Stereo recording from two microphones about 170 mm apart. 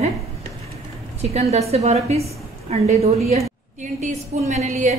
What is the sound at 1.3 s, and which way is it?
A woman's voice, 40° right (ahead or behind).